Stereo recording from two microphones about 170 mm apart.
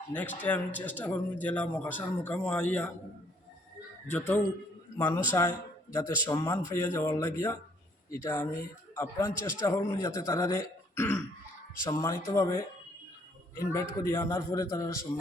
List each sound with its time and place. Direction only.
0.1 s speech: 10° left (ahead or behind)
4.1 s a man's voice: 10° left (ahead or behind)
13.9 s speech: 15° left (ahead or behind)